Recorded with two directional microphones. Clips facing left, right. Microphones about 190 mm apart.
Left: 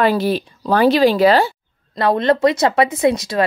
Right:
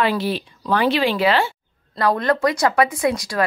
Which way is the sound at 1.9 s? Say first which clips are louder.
Left 4 dB; 25° left (ahead or behind).